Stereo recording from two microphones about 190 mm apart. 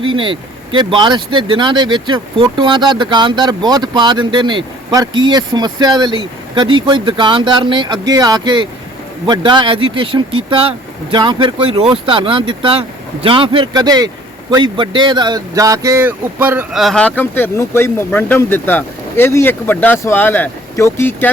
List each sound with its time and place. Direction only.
0.0 s speech: 25° right (ahead or behind); by 21.2 s 10° left (ahead or behind)